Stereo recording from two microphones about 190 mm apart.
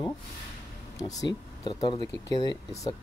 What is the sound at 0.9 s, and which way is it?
Speech, 20° left (ahead or behind).